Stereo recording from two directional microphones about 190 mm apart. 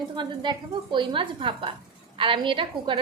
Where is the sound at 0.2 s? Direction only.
25° right (ahead or behind).